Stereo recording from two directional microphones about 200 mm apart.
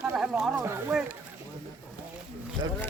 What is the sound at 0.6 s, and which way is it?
Speech, 15° right (ahead or behind).